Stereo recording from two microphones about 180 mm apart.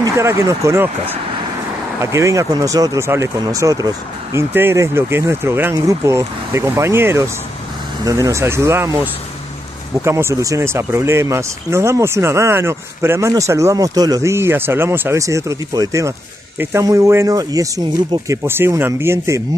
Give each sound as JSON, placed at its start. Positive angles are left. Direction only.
{"t": 0.0, "sound": "speech", "side_deg": -15}